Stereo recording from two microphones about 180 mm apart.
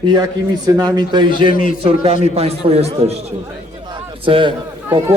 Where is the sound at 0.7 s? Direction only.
20° right (ahead or behind).